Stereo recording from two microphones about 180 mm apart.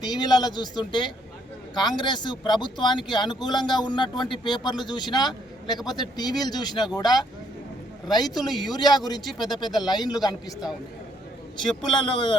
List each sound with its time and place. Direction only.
0.1 s a man's voice: 25° left (ahead or behind)
9.2 s speech: centre (ahead or behind)
9.9 s a man's voice: 25° left (ahead or behind)
11.6 s a man's voice: 25° left (ahead or behind)